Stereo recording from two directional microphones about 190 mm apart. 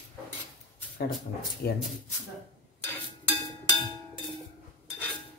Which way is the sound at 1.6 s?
55° left (ahead or behind).